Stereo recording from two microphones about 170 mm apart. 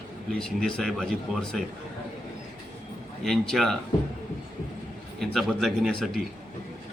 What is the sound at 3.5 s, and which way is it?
Speech, 5° left (ahead or behind).